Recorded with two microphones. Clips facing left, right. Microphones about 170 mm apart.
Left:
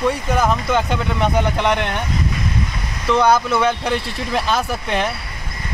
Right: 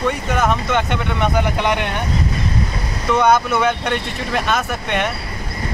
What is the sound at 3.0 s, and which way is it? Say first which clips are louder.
Speech: even; 5° right (ahead or behind).